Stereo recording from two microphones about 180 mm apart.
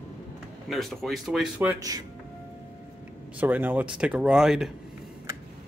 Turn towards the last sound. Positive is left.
turn(degrees=0)  # may be behind; listen again after turning